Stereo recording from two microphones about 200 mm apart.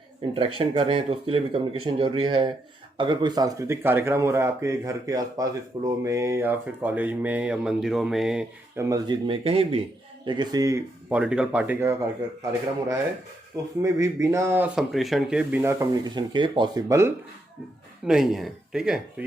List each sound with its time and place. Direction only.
0.3 s speech: 25° right (ahead or behind); by 8.8 s 5° right (ahead or behind)
8.8 s speech: 20° right (ahead or behind)
13.8 s speech: 15° right (ahead or behind)
18.0 s speech: 5° right (ahead or behind)